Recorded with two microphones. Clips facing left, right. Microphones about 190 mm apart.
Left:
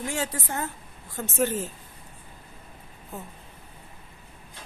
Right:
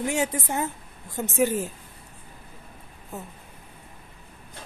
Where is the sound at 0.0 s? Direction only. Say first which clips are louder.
Right 5 dB; 20° right (ahead or behind).